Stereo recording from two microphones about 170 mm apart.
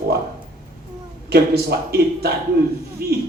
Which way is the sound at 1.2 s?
65° right (ahead or behind).